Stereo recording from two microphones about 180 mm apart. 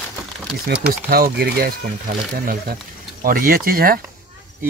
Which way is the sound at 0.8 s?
60° right (ahead or behind).